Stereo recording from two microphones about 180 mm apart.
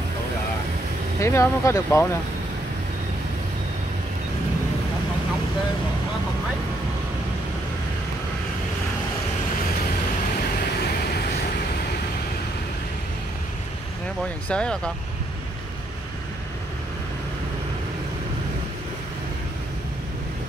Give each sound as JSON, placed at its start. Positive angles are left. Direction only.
{"t": 1.2, "sound": "speech", "side_deg": 15}
{"t": 14.5, "sound": "speech", "side_deg": 5}